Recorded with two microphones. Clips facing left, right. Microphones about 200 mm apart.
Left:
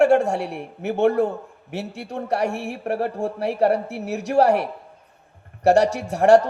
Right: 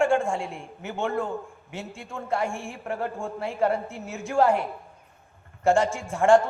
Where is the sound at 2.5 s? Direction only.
70° left (ahead or behind).